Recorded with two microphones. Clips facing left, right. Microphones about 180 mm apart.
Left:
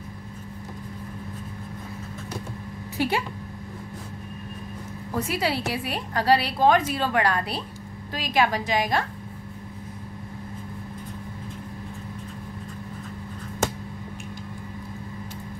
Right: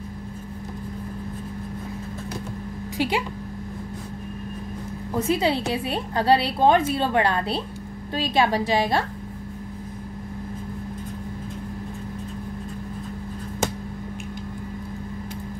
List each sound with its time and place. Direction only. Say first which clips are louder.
3.0 s speech: right 1 dB; 15° right (ahead or behind)
5.1 s a woman's voice: right 4 dB; 25° right (ahead or behind)